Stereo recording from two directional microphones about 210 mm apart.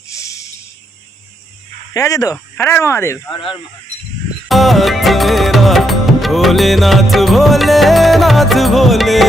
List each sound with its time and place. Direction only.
0.1 s a sound: 15° left (ahead or behind)
1.9 s speech: 15° left (ahead or behind)
4.4 s music: centre (ahead or behind)